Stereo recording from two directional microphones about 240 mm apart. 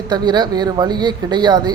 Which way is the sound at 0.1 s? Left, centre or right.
Centre.